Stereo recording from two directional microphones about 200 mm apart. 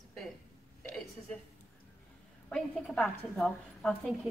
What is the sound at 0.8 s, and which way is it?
Speech, 5° left (ahead or behind).